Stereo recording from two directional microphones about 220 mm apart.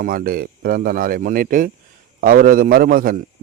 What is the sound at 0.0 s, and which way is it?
A man's voice, 40° right (ahead or behind).